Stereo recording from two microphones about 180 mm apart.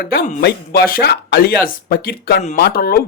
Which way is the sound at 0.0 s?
60° left (ahead or behind).